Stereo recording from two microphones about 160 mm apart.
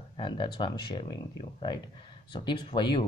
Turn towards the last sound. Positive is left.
turn(degrees=30)  # may be behind; listen again after turning